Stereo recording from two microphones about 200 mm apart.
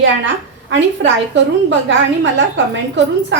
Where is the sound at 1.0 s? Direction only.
65° right (ahead or behind).